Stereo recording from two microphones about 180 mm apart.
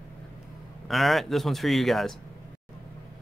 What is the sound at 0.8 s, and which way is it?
Speech, centre (ahead or behind).